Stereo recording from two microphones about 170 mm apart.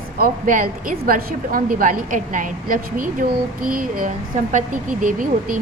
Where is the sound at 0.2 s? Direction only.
55° right (ahead or behind).